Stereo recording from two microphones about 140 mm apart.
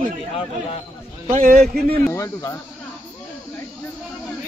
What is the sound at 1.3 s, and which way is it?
Speech, 70° right (ahead or behind).